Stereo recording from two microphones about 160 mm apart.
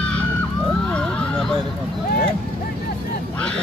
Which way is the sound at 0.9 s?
5° left (ahead or behind).